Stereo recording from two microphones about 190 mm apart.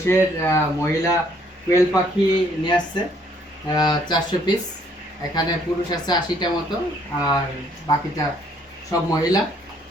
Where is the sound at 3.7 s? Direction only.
25° left (ahead or behind).